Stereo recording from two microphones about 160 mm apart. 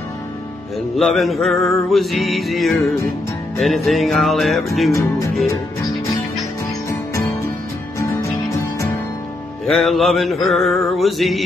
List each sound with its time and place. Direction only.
0.9 s music: centre (ahead or behind)
8.0 s music: 20° left (ahead or behind)
9.7 s music: centre (ahead or behind)